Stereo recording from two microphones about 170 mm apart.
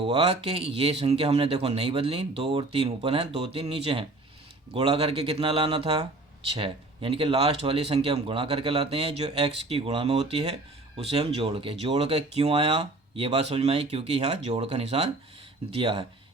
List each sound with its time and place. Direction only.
0.0 s speech: 35° right (ahead or behind)